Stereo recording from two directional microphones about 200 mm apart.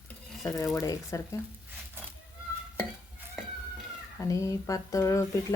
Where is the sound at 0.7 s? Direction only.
15° left (ahead or behind).